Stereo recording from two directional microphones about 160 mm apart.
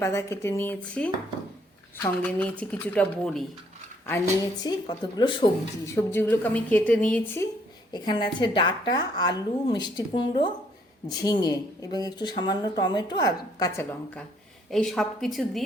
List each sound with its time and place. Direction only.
0.0 s a woman's voice: 15° left (ahead or behind)
4.6 s a woman's voice: 25° left (ahead or behind); by 7.4 s 10° left (ahead or behind)
7.9 s a woman's voice: 30° left (ahead or behind)
14.7 s speech: centre (ahead or behind)